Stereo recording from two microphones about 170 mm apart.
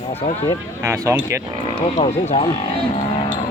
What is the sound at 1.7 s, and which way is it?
Speech, 40° left (ahead or behind).